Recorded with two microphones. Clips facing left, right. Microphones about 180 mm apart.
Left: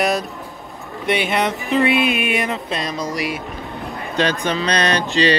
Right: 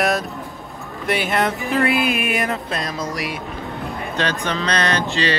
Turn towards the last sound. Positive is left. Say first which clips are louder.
# left 3 dB
turn(degrees=15)  # may be behind; listen again after turning